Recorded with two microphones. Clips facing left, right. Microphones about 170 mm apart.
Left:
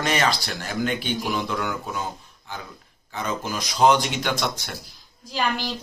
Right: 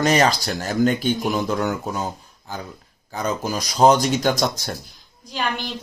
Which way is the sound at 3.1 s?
40° right (ahead or behind).